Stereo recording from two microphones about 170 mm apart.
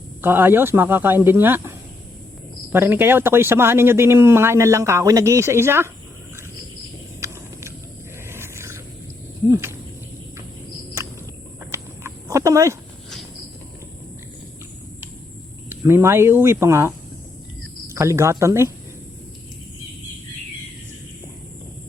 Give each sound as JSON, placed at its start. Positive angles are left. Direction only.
{"t": 0.2, "sound": "speech", "side_deg": -10}
{"t": 2.7, "sound": "speech", "side_deg": -15}
{"t": 7.2, "sound": "a sound", "side_deg": -15}
{"t": 9.5, "sound": "speech", "side_deg": -15}
{"t": 11.6, "sound": "horse", "side_deg": -15}
{"t": 15.7, "sound": "speech", "side_deg": -15}